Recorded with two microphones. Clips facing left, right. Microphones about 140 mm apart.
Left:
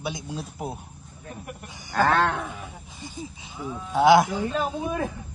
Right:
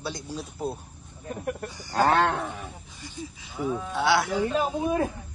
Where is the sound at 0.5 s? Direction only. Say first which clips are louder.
Right 2 dB; 15° left (ahead or behind).